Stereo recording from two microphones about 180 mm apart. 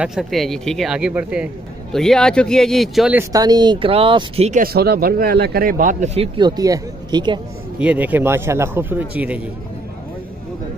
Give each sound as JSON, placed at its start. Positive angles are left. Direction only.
{"t": 0.0, "sound": "speech", "side_deg": 0}
{"t": 3.3, "sound": "speech", "side_deg": -20}
{"t": 4.6, "sound": "a man's voice", "side_deg": -60}
{"t": 6.3, "sound": "speech", "side_deg": -25}
{"t": 7.8, "sound": "a man's voice", "side_deg": -10}